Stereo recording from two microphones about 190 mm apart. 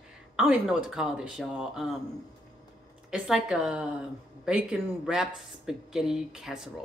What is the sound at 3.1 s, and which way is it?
A woman's voice, 5° right (ahead or behind).